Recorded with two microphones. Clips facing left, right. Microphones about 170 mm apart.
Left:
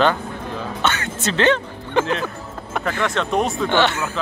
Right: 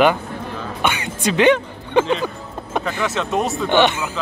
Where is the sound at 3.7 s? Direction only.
15° right (ahead or behind).